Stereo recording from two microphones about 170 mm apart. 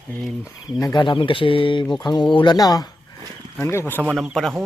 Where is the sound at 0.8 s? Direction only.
20° left (ahead or behind).